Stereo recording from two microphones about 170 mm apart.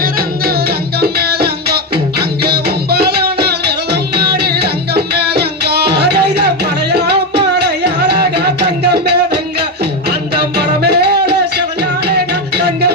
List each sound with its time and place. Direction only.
0.0 s music: 60° right (ahead or behind)